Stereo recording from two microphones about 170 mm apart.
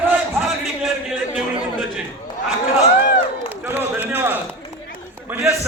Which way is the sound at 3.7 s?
10° right (ahead or behind).